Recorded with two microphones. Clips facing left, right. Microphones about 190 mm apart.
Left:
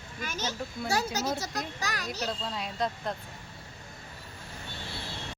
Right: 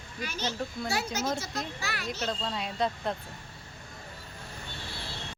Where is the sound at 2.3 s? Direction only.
Centre (ahead or behind).